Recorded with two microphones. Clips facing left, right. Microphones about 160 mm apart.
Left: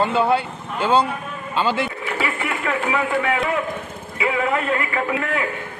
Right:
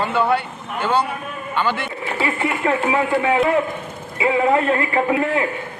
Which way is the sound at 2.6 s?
25° right (ahead or behind).